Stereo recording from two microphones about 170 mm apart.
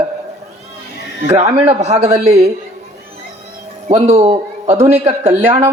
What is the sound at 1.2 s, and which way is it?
Speech, 40° right (ahead or behind).